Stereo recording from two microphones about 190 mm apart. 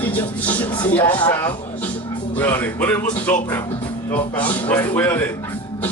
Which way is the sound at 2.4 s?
10° left (ahead or behind).